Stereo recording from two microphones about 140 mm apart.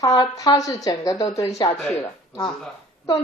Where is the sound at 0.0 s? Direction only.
25° left (ahead or behind).